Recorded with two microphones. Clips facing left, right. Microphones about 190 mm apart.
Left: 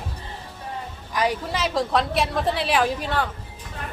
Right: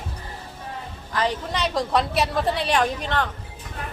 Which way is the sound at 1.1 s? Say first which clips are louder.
Left 1 dB; 10° left (ahead or behind).